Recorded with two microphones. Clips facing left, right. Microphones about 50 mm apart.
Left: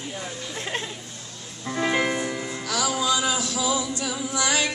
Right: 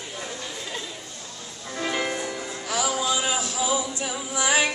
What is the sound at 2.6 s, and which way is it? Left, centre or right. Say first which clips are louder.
Music: left 1 dB; right.